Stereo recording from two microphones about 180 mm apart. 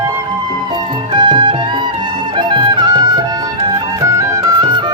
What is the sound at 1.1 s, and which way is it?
Music, 25° right (ahead or behind).